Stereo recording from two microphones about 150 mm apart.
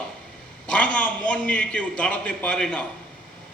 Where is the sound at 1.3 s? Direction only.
5° left (ahead or behind).